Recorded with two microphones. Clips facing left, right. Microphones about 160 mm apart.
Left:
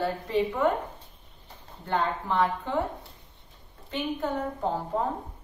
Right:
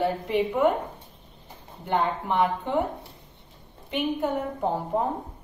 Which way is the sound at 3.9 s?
20° right (ahead or behind).